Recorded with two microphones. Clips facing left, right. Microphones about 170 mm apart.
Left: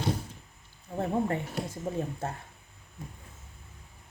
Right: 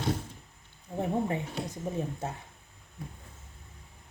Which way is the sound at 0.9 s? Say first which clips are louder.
Left 1 dB; 15° right (ahead or behind).